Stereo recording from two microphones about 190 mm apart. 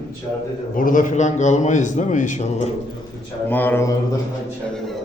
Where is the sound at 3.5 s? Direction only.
10° left (ahead or behind).